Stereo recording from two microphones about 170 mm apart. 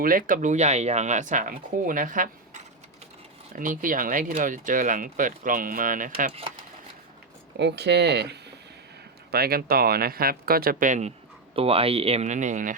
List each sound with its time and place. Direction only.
0.0 s speech: 55° right (ahead or behind)
7.5 s speech: 85° right
9.3 s speech: 65° right (ahead or behind); by 11.1 s 45° right (ahead or behind)
11.5 s speech: 35° right (ahead or behind)